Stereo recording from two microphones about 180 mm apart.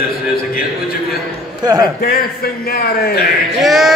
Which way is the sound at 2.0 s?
55° left (ahead or behind).